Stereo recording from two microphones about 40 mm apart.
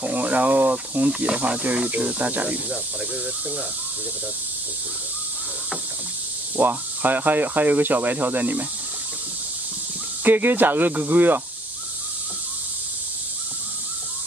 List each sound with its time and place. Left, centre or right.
0.1 s speech: right
1.6 s speech: right
6.5 s speech: right
10.2 s speech: right